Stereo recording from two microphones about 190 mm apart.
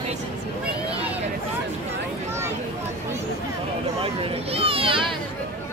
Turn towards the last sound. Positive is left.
turn(degrees=-30)  # may be behind; listen again after turning